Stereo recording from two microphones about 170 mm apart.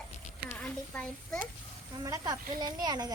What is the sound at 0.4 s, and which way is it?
Speech, 10° left (ahead or behind).